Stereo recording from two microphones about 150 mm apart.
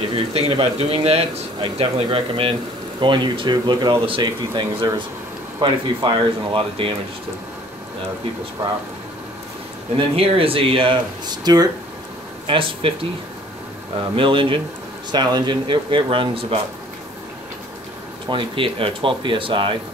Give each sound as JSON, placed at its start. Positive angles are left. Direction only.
{"t": 0.1, "sound": "speech", "side_deg": -40}
{"t": 9.9, "sound": "speech", "side_deg": -40}
{"t": 14.1, "sound": "speech", "side_deg": -35}
{"t": 18.2, "sound": "speech", "side_deg": -35}